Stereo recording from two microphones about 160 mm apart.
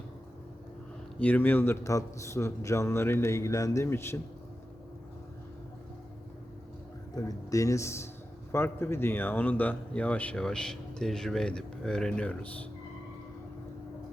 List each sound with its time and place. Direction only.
1.2 s speech: 10° left (ahead or behind)
7.2 s speech: 20° left (ahead or behind)